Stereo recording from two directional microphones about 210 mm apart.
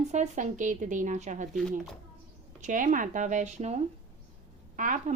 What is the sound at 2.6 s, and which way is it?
A woman's voice, 40° right (ahead or behind).